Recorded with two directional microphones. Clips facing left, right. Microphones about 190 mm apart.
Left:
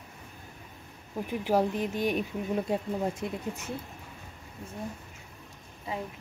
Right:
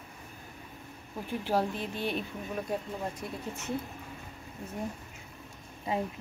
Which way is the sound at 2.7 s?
25° left (ahead or behind).